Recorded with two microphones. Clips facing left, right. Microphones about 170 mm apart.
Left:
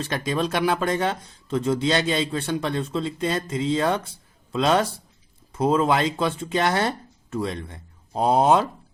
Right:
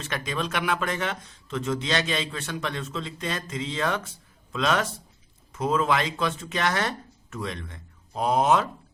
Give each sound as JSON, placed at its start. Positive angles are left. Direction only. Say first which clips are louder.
{"t": 0.0, "sound": "speech", "louder": "left 5 dB", "side_deg": 35}